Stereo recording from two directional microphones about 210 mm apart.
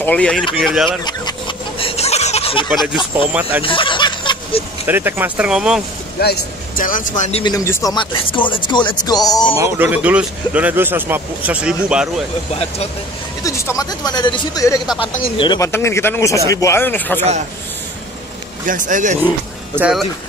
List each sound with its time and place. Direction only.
0.0 s speech: 5° left (ahead or behind)
1.8 s fowl: 30° left (ahead or behind)
2.8 s speech: 25° left (ahead or behind)
3.6 s snicker: 25° left (ahead or behind)
4.8 s speech: 10° right (ahead or behind)
6.1 s speech: 50° left (ahead or behind); by 7.5 s 30° left (ahead or behind)
7.5 s speech: 15° left (ahead or behind)
9.6 s speech: 10° right (ahead or behind)
13.4 s speech: 15° left (ahead or behind)
18.7 s speech: 40° right (ahead or behind)
19.7 s speech: 5° right (ahead or behind)